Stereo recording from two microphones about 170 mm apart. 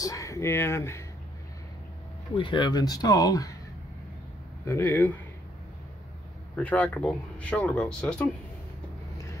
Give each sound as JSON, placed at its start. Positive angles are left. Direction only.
{"t": 0.0, "sound": "speech", "side_deg": 20}
{"t": 2.3, "sound": "speech", "side_deg": 30}
{"t": 4.6, "sound": "speech", "side_deg": 15}
{"t": 6.5, "sound": "speech", "side_deg": 10}